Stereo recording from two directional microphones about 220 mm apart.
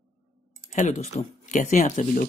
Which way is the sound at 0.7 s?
30° left (ahead or behind).